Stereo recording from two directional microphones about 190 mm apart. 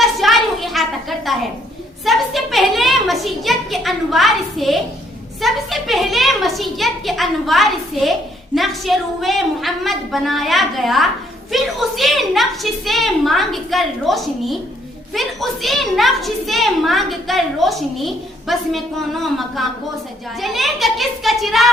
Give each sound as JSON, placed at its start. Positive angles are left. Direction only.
{"t": 0.0, "sound": "a sound", "side_deg": 0}
{"t": 2.0, "sound": "a woman's voice", "side_deg": 0}
{"t": 20.4, "sound": "a woman's voice", "side_deg": 0}